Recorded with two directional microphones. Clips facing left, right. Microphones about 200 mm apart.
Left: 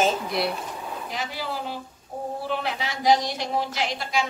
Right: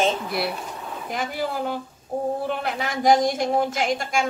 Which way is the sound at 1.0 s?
50° right (ahead or behind).